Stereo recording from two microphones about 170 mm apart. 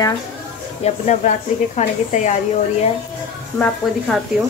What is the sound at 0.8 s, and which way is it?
Speech, 40° left (ahead or behind).